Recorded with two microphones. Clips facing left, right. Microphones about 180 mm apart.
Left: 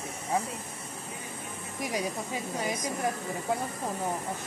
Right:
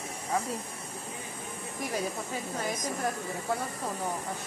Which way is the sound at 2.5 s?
10° left (ahead or behind).